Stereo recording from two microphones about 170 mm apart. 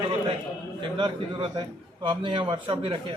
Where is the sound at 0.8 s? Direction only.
25° right (ahead or behind).